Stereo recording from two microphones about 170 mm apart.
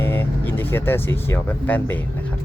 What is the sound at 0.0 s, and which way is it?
Speech, 15° left (ahead or behind).